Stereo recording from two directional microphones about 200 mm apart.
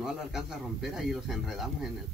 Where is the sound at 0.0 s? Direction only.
Centre (ahead or behind).